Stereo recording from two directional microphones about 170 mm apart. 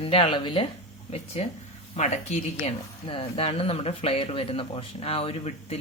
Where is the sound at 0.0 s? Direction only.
35° left (ahead or behind).